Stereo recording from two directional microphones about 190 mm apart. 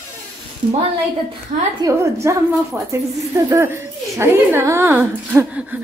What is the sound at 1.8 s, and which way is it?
Speech, 15° right (ahead or behind).